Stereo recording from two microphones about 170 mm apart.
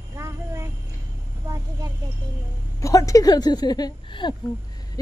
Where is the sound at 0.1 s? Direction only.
15° right (ahead or behind).